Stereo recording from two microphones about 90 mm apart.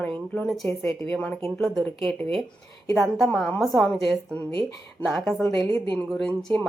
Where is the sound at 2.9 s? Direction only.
Centre (ahead or behind).